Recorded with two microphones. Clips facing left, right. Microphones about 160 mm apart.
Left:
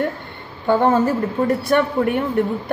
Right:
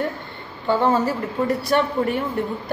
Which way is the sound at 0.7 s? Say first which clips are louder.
Left 3 dB; 50° left (ahead or behind).